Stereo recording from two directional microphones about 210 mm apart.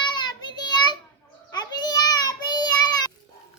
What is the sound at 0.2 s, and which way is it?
Child singing, 20° left (ahead or behind).